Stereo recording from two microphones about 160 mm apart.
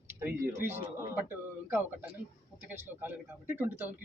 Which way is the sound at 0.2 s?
15° right (ahead or behind).